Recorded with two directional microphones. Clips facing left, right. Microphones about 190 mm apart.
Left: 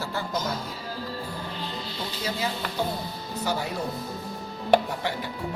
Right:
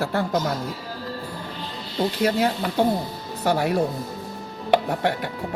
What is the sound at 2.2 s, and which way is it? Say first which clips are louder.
A woman's voice: right 7 dB; 65° right (ahead or behind).